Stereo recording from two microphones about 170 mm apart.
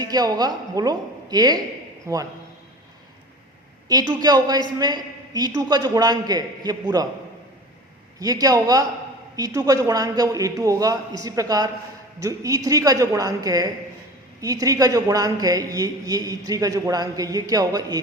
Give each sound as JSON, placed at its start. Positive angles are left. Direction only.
{"t": 0.0, "sound": "a woman's voice", "side_deg": -20}
{"t": 3.8, "sound": "a woman's voice", "side_deg": -20}
{"t": 8.2, "sound": "a woman's voice", "side_deg": -20}